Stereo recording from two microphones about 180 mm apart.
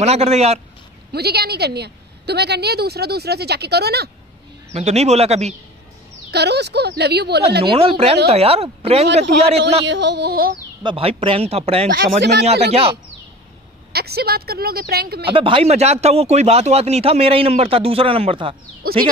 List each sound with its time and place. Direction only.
0.0 s speech: 35° right (ahead or behind)
1.1 s a woman's voice: 65° right (ahead or behind)
4.7 s speech: 40° right (ahead or behind)
6.3 s speech: 70° right (ahead or behind)
7.7 s speech: 30° right (ahead or behind)
9.8 s speech: 75° right (ahead or behind); by 10.6 s 60° right (ahead or behind)
10.8 s speech: 30° right (ahead or behind)
11.9 s a woman's voice: 60° right (ahead or behind)
13.9 s a woman's voice: 60° right (ahead or behind)
15.3 s speech: 30° right (ahead or behind)
18.8 s speech: 55° right (ahead or behind)